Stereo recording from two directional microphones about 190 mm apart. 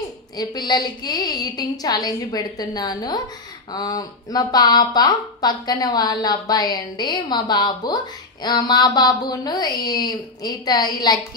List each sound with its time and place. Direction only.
0.4 s speech: 20° left (ahead or behind)